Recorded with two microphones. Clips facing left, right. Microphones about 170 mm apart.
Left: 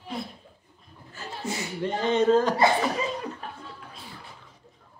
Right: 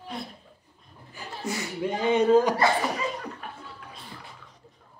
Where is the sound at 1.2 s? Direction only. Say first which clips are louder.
Left 2 dB; 15° right (ahead or behind).